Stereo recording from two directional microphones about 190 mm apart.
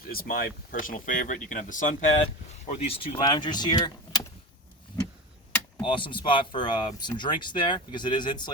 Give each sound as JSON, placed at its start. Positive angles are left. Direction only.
{"t": 0.0, "sound": "speech", "side_deg": 50}
{"t": 2.2, "sound": "speech", "side_deg": 30}
{"t": 4.9, "sound": "clock", "side_deg": 20}
{"t": 5.9, "sound": "speech", "side_deg": 25}